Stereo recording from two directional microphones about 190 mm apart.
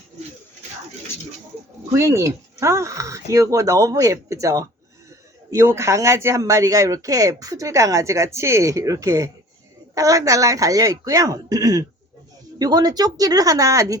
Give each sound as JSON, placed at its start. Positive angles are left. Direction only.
{"t": 1.9, "sound": "speech", "side_deg": -15}